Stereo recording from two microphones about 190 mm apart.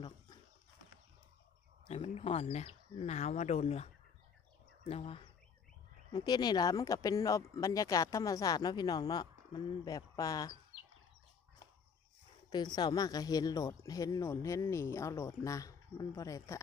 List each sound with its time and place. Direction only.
1.9 s speech: 30° left (ahead or behind)
12.4 s a woman's voice: 20° left (ahead or behind)